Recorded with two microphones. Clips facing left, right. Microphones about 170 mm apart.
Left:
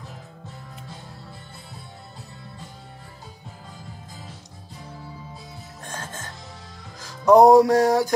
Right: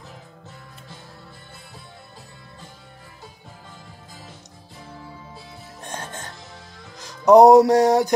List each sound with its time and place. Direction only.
5.9 s music: 20° right (ahead or behind)